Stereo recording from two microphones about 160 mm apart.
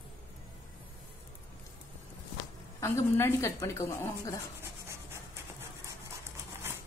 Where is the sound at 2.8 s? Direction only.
15° left (ahead or behind).